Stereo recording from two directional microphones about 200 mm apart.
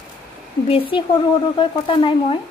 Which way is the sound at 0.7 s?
25° left (ahead or behind).